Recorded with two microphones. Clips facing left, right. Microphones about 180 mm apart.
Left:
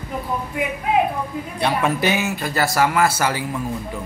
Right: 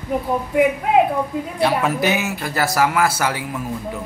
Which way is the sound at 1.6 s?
5° right (ahead or behind).